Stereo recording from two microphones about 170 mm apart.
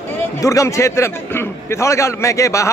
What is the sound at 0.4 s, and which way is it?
A man's voice, 20° left (ahead or behind).